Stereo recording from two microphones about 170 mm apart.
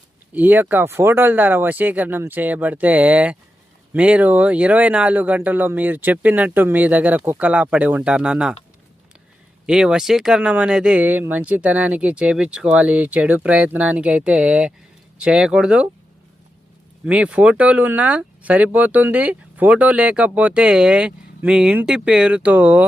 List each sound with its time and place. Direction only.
0.3 s speech: 10° right (ahead or behind)
9.6 s speech: 5° right (ahead or behind)
17.1 s speech: 5° right (ahead or behind)